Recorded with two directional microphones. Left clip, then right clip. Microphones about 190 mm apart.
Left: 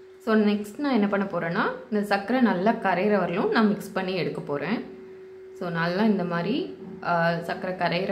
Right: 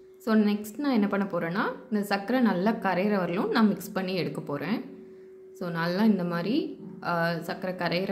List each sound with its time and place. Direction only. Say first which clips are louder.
0.2 s a woman's voice: left 3 dB; 35° right (ahead or behind)